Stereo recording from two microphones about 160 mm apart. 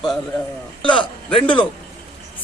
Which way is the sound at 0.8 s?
30° left (ahead or behind).